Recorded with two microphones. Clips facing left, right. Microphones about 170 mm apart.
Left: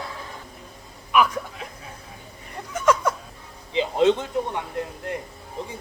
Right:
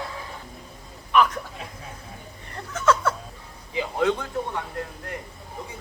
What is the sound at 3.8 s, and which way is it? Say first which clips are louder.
Speech: left 4 dB; 20° left (ahead or behind).